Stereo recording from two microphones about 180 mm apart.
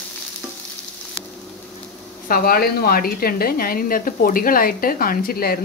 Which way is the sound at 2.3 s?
55° left (ahead or behind).